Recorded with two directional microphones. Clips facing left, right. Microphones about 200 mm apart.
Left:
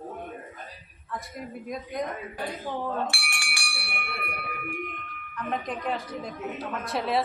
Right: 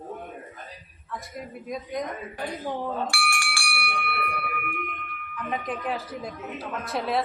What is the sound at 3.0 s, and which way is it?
Bell, 20° left (ahead or behind).